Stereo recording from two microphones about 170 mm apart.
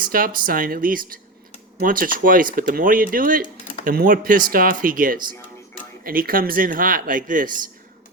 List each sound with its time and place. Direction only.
0.0 s speech: 55° right (ahead or behind)